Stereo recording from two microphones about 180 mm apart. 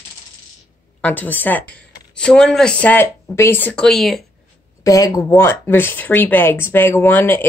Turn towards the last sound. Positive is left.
turn(degrees=10)  # may be behind; listen again after turning